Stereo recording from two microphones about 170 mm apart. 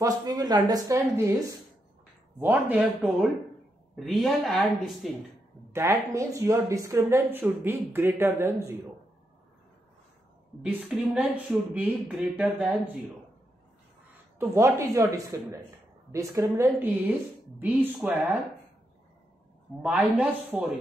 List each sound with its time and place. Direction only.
0.0 s speech: 20° right (ahead or behind)
2.4 s a woman's voice: 10° right (ahead or behind)
5.7 s a woman's voice: 15° right (ahead or behind)
10.6 s a woman's voice: 5° right (ahead or behind)
14.4 s a woman's voice: 15° right (ahead or behind)
19.8 s a woman's voice: 5° right (ahead or behind)